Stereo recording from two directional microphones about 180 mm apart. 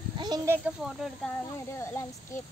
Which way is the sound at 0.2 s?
20° right (ahead or behind).